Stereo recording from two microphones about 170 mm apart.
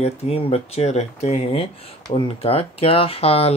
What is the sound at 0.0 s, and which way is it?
Speech, 35° left (ahead or behind).